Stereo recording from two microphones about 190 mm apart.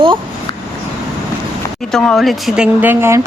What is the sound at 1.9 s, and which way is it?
Speech, centre (ahead or behind).